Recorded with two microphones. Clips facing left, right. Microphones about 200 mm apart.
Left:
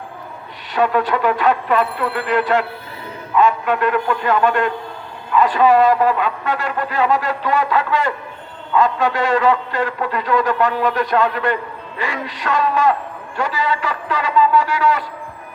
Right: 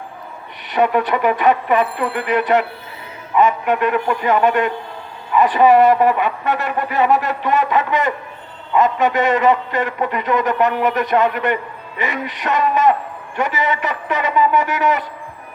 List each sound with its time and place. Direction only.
0.7 s a man's voice: 20° right (ahead or behind)